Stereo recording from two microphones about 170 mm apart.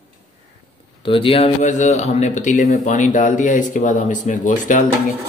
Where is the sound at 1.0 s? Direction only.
30° left (ahead or behind); by 4.8 s 50° left (ahead or behind).